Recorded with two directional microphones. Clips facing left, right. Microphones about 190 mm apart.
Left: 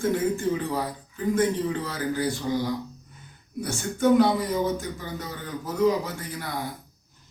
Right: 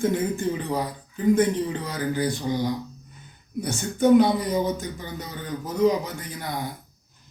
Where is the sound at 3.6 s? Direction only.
20° right (ahead or behind).